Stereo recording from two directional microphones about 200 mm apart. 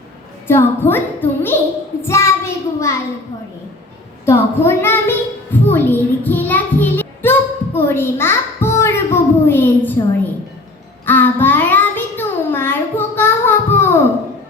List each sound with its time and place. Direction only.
0.4 s a woman's voice: 10° left (ahead or behind)
4.3 s a sound: 10° left (ahead or behind)
11.0 s child singing: 10° left (ahead or behind)